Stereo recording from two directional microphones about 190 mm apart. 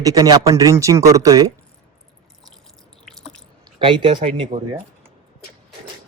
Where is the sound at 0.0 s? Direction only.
20° right (ahead or behind).